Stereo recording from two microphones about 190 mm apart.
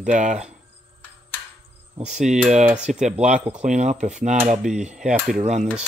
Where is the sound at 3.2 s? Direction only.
40° right (ahead or behind).